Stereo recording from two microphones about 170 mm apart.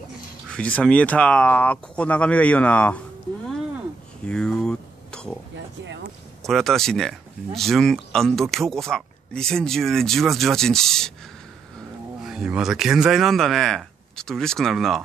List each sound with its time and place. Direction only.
0.5 s speech: 5° left (ahead or behind)
4.3 s a sound: 5° left (ahead or behind)
6.4 s speech: centre (ahead or behind)
12.2 s speech: 5° right (ahead or behind)